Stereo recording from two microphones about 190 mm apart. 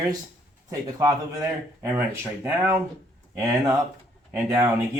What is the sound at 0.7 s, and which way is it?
Speech, 20° right (ahead or behind).